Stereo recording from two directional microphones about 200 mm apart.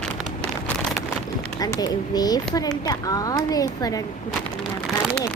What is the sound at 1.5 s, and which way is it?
A child's voice, 20° left (ahead or behind).